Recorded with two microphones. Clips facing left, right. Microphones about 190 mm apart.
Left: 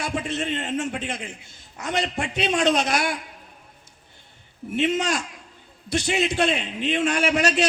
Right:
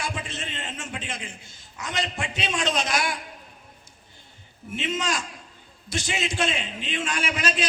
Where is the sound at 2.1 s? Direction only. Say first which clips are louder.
Left 5 dB; 40° left (ahead or behind).